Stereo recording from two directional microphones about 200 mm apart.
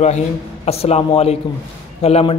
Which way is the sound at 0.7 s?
30° left (ahead or behind).